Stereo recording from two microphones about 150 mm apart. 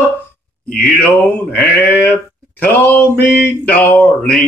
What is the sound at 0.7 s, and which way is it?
Speech, 75° left (ahead or behind).